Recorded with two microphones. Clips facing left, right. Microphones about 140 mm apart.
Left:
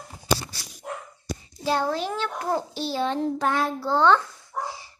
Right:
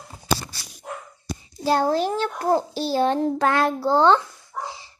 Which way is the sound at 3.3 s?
90° right.